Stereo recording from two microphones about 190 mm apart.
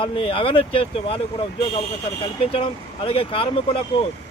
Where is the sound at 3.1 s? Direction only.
30° left (ahead or behind).